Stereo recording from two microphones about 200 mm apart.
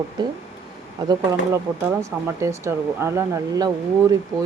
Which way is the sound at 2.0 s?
15° right (ahead or behind).